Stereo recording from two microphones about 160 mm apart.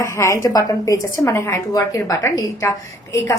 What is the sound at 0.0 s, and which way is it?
A woman's voice, 20° left (ahead or behind).